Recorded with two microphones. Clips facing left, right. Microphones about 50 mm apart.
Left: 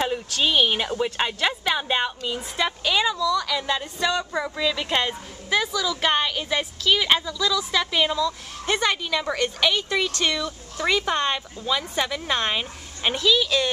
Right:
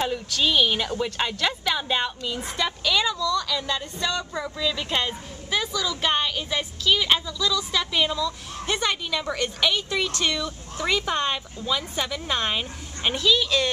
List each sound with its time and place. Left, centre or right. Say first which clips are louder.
0.4 s a woman's voice: left 1 dB; centre
8.6 s a woman's voice: left 3 dB; centre
9.1 s a woman's voice: left 2 dB; centre